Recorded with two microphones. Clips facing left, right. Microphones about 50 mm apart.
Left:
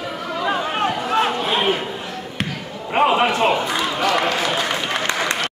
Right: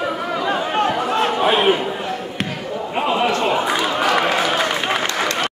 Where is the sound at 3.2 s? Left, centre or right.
Centre.